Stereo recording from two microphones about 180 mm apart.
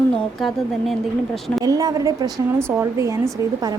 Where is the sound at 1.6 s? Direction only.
20° right (ahead or behind).